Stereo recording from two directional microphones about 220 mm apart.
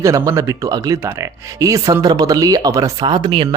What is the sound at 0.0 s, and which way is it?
Speech, 15° right (ahead or behind).